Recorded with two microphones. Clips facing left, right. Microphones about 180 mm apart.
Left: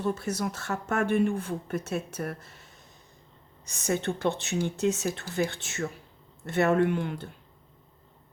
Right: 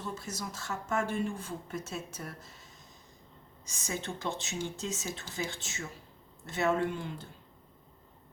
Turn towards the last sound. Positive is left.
turn(degrees=65)  # may be behind; listen again after turning